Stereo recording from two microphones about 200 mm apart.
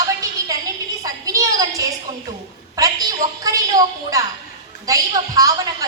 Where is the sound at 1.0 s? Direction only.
15° right (ahead or behind).